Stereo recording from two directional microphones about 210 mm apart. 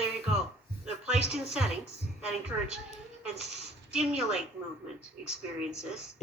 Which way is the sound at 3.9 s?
5° right (ahead or behind).